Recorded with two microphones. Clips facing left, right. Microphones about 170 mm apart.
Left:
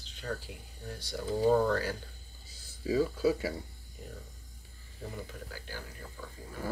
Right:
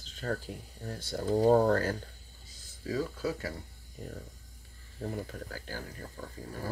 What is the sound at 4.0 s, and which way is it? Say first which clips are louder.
Speech: right 4 dB; 40° right (ahead or behind).